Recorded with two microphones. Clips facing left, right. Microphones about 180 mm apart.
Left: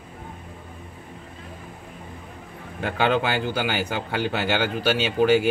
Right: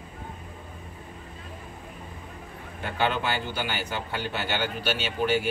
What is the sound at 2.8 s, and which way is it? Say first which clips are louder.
Speech: left 5 dB; 90° left.